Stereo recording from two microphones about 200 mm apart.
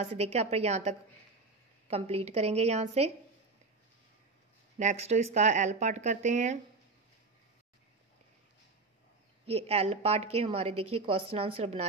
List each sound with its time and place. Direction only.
0.0 s speech: 35° right (ahead or behind)
4.7 s speech: 35° right (ahead or behind)
9.5 s a woman's voice: 30° right (ahead or behind)